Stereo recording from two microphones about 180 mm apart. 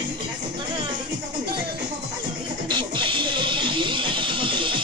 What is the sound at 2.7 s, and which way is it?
Music, 25° right (ahead or behind).